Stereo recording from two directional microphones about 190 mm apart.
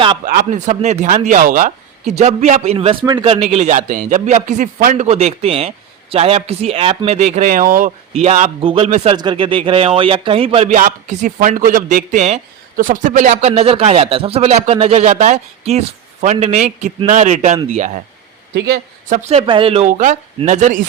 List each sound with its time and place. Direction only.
0.3 s a man's voice: 40° right (ahead or behind)
5.0 s a man's voice: 35° right (ahead or behind)
10.8 s a man's voice: 45° right (ahead or behind)
18.5 s a man's voice: 60° right (ahead or behind)
19.0 s a man's voice: 40° right (ahead or behind)